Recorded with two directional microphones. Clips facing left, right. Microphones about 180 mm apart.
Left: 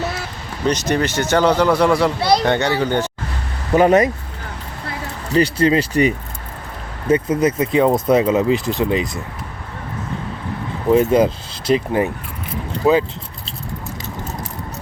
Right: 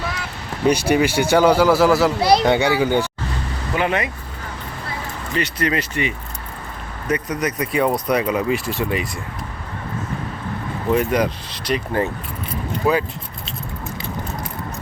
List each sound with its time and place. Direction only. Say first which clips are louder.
0.7 s speech: right 2 dB; 10° right (ahead or behind)
3.8 s speech: left 9 dB; 40° left (ahead or behind)
5.3 s speech: left 7 dB; 30° left (ahead or behind)
7.1 s speech: left 6 dB; 25° left (ahead or behind)
10.9 s speech: left 5 dB; 25° left (ahead or behind)